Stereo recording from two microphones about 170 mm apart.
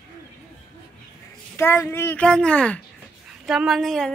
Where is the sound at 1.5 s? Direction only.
15° left (ahead or behind).